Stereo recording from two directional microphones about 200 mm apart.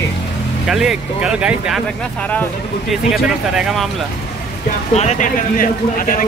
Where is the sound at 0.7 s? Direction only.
Centre (ahead or behind).